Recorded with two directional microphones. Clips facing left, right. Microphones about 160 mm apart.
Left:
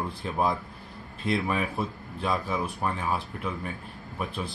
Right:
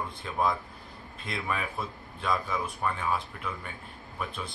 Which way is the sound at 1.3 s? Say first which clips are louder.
Left 6 dB; 30° left (ahead or behind).